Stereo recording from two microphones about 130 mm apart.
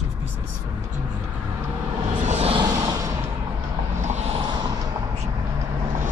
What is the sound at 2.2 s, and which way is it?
Vehicle, 55° right (ahead or behind).